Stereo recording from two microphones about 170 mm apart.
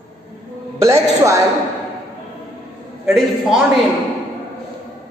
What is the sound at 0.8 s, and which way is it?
Speech, 20° right (ahead or behind).